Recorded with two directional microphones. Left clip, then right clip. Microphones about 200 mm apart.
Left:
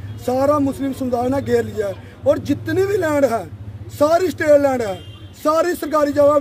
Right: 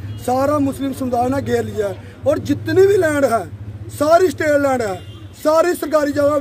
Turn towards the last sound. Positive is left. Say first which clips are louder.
# left 1 dB
turn(degrees=0)  # may be behind; listen again after turning